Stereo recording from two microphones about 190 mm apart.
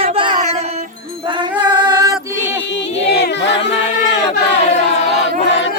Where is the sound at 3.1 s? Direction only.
65° left (ahead or behind).